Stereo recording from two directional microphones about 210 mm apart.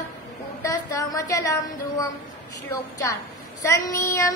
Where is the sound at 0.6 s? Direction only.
15° left (ahead or behind).